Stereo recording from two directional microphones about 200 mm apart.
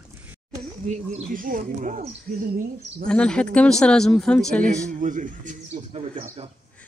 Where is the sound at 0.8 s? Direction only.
35° right (ahead or behind).